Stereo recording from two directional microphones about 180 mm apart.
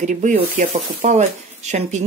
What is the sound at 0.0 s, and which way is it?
Speech, 45° right (ahead or behind).